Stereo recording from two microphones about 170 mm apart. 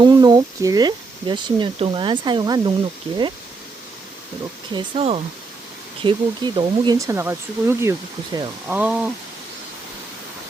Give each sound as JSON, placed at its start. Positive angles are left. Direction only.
{"t": 0.0, "sound": "speech", "side_deg": -25}
{"t": 4.7, "sound": "speech", "side_deg": -30}
{"t": 8.6, "sound": "speech", "side_deg": -10}